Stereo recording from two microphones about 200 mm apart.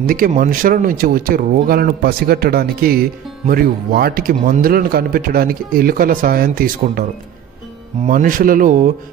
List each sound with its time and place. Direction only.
0.0 s speech: 45° right (ahead or behind)
8.1 s speech: 45° right (ahead or behind)